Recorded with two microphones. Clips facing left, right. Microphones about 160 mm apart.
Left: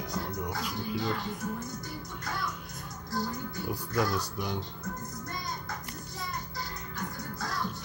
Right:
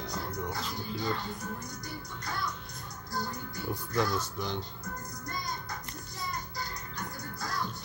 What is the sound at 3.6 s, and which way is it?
Speech, 5° left (ahead or behind).